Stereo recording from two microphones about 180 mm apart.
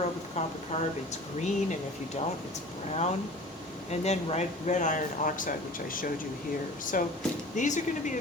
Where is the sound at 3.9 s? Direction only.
35° left (ahead or behind).